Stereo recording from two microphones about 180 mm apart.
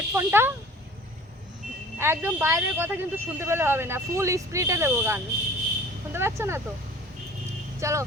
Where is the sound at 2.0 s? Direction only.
15° right (ahead or behind).